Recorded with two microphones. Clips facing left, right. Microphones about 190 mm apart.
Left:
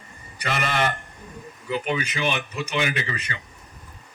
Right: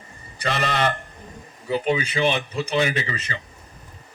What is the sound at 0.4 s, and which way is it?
Speech, 35° right (ahead or behind).